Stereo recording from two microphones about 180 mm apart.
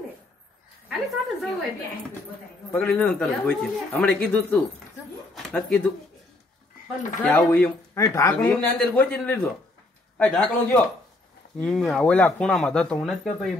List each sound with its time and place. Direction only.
0.8 s a woman's voice: centre (ahead or behind)
2.7 s speech: 5° left (ahead or behind)
5.3 s a sound: 5° left (ahead or behind)
7.2 s speech: 5° left (ahead or behind)